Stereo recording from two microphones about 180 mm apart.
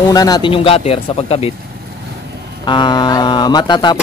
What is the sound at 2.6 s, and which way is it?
Speech, 25° left (ahead or behind).